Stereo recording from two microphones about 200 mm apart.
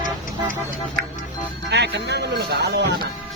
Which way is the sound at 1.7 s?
60° right (ahead or behind).